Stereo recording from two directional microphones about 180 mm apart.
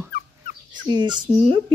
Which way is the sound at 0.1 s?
60° left (ahead or behind).